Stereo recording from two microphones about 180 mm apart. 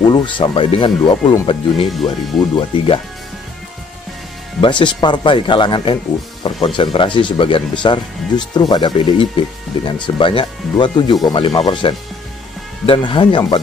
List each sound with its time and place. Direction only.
0.1 s speech: 25° left (ahead or behind)
4.6 s speech: 25° left (ahead or behind)